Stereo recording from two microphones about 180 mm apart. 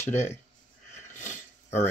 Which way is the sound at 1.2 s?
40° left (ahead or behind).